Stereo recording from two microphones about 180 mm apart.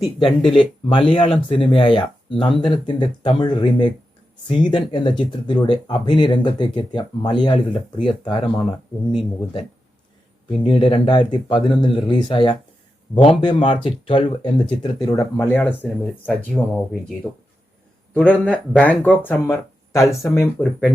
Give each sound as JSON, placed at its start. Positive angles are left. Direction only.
{"t": 0.2, "sound": "speech", "side_deg": 0}
{"t": 0.9, "sound": "speech", "side_deg": 30}
{"t": 10.6, "sound": "speech", "side_deg": 30}
{"t": 18.1, "sound": "speech", "side_deg": 5}